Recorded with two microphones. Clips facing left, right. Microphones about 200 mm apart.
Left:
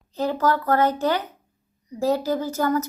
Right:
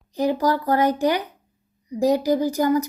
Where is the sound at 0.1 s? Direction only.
15° right (ahead or behind).